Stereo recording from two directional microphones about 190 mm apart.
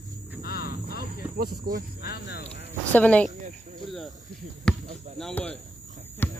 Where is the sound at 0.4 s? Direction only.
55° left (ahead or behind).